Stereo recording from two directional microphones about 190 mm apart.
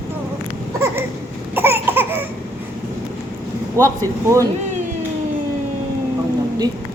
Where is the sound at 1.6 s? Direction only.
10° right (ahead or behind).